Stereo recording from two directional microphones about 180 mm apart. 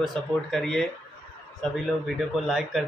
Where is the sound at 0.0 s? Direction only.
Centre (ahead or behind).